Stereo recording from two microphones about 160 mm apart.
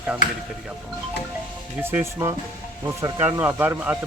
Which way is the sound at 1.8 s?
15° right (ahead or behind).